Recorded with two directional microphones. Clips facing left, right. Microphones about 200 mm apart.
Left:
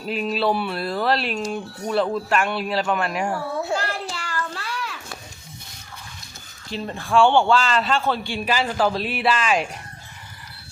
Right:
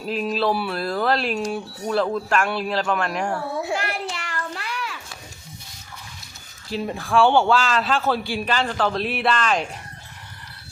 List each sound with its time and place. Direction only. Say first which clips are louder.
0.1 s speech: even; centre (ahead or behind)
4.1 s a sound: left 1 dB; 20° right (ahead or behind)
6.7 s speech: right 1 dB; 5° right (ahead or behind)
8.4 s speech: left 3 dB; 10° left (ahead or behind)